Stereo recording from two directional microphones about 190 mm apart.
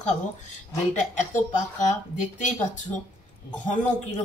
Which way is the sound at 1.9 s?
40° left (ahead or behind).